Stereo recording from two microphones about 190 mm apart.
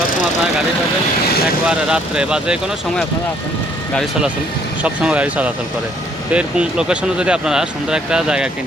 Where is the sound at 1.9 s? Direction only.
5° right (ahead or behind).